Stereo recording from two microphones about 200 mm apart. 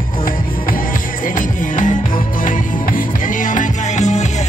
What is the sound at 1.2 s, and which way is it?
Music, 40° left (ahead or behind).